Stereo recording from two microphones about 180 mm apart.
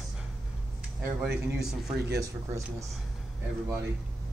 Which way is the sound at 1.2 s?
Centre (ahead or behind).